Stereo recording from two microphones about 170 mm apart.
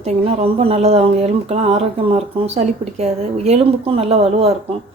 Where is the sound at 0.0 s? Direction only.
35° right (ahead or behind).